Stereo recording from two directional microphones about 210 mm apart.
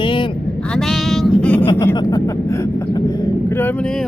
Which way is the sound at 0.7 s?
Centre (ahead or behind).